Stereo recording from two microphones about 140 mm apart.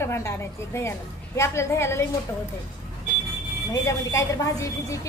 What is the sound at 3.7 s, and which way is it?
A woman's voice, 20° left (ahead or behind).